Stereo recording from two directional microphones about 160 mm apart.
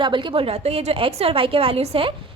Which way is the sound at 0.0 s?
30° right (ahead or behind).